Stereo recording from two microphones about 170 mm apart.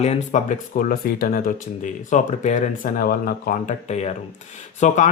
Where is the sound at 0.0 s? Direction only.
40° left (ahead or behind); by 1.5 s 60° left (ahead or behind).